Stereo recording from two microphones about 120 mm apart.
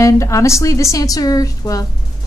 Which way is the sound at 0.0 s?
25° left (ahead or behind).